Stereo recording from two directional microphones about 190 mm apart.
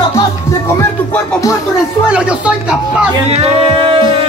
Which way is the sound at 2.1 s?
5° right (ahead or behind).